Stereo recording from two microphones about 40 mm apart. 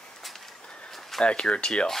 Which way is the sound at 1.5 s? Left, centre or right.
Left.